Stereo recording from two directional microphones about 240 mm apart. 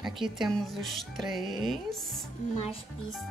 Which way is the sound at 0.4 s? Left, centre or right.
Centre.